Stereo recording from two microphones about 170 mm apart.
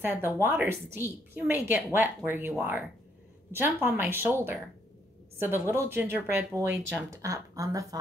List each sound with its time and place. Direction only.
0.0 s a woman's voice: 10° right (ahead or behind)